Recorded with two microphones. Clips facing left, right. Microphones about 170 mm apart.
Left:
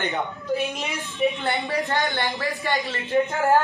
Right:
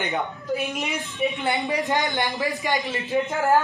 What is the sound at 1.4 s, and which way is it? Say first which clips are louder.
A man's voice: right 1 dB; 15° right (ahead or behind).